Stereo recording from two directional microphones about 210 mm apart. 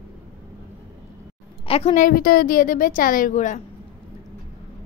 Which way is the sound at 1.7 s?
25° left (ahead or behind).